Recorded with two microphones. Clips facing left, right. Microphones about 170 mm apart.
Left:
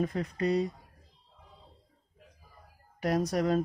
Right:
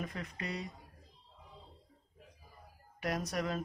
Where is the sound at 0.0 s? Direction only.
35° left (ahead or behind).